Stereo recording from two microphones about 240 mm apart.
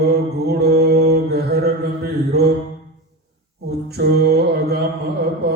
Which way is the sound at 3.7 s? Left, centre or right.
Right.